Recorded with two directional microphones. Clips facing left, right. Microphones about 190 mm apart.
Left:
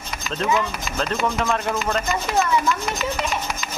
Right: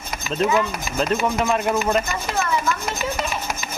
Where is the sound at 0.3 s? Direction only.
15° right (ahead or behind).